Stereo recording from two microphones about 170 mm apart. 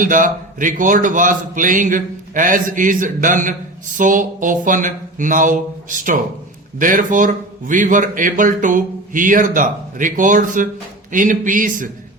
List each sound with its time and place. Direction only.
0.0 s a man's voice: 50° right (ahead or behind)